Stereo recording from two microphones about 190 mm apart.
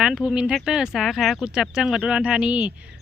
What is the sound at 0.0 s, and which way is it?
A woman's voice, 5° right (ahead or behind).